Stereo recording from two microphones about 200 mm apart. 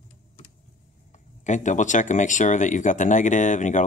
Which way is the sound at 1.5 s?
40° left (ahead or behind).